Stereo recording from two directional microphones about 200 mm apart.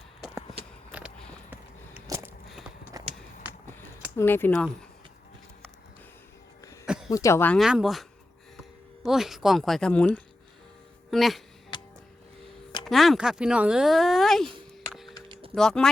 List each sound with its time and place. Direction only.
0.9 s a sound: 5° right (ahead or behind)
2.0 s walk: 15° right (ahead or behind)
3.0 s run: 15° right (ahead or behind)
4.2 s speech: 10° left (ahead or behind)
6.8 s a sound: 5° right (ahead or behind)
7.1 s speech: 15° left (ahead or behind)
7.6 s speech: centre (ahead or behind)
9.0 s speech: centre (ahead or behind)
12.8 s speech: centre (ahead or behind)
15.5 s speech: centre (ahead or behind)